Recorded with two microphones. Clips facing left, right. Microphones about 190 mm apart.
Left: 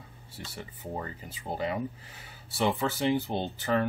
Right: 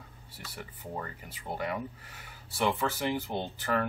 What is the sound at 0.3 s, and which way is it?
Speech, 25° left (ahead or behind).